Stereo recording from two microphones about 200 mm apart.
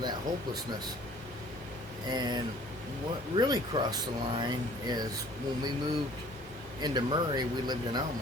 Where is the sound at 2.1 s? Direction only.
20° right (ahead or behind).